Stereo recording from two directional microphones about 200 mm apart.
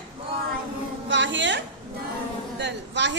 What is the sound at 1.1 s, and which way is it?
A woman's voice, 65° right (ahead or behind).